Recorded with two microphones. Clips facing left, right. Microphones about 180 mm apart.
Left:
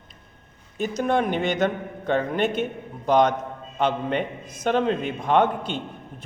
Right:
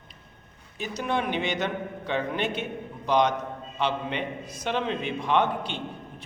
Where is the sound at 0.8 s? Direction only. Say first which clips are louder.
Left 6 dB; 45° left (ahead or behind).